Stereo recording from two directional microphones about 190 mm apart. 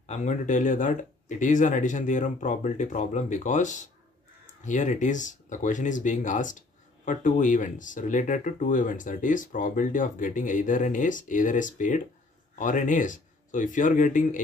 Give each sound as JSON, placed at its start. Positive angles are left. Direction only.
{"t": 0.0, "sound": "speech", "side_deg": 35}